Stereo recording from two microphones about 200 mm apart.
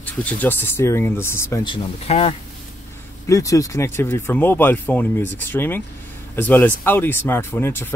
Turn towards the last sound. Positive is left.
turn(degrees=10)  # may be behind; listen again after turning